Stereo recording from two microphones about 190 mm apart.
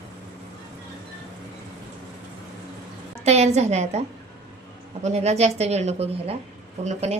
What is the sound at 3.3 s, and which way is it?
Speech, 35° right (ahead or behind).